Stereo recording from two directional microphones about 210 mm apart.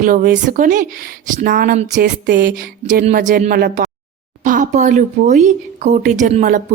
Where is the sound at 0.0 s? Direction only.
40° right (ahead or behind).